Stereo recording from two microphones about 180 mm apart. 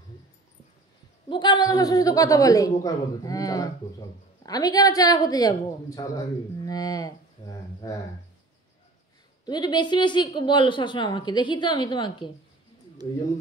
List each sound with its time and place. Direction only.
1.3 s a man's voice: 25° left (ahead or behind)
9.5 s a man's voice: 25° left (ahead or behind)